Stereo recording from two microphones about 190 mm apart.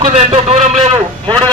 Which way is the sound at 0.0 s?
30° right (ahead or behind).